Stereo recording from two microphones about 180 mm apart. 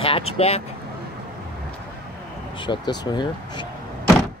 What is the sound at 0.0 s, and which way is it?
Speech, 35° left (ahead or behind).